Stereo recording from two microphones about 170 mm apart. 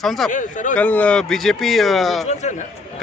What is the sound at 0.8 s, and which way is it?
A man's voice, 10° left (ahead or behind).